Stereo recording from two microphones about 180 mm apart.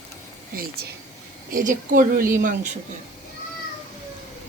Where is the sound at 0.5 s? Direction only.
55° right (ahead or behind).